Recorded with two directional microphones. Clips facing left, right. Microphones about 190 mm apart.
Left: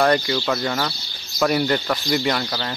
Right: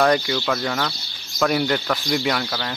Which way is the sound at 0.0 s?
Centre (ahead or behind).